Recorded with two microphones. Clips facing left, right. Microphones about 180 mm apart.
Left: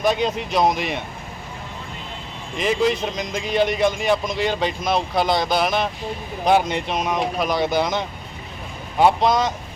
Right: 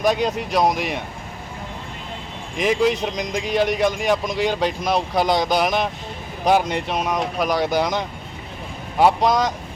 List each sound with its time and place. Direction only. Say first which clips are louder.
0.0 s speech: right 1 dB; 10° right (ahead or behind)
2.6 s speech: right 1 dB; 10° right (ahead or behind)
3.0 s speech: right 1 dB; 5° left (ahead or behind)
3.4 s speech: left 1 dB; 10° right (ahead or behind)